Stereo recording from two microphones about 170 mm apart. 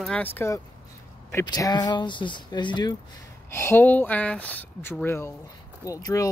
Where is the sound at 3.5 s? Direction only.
15° left (ahead or behind).